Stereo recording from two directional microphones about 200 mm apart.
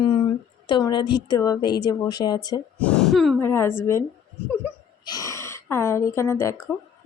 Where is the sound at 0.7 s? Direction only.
20° left (ahead or behind).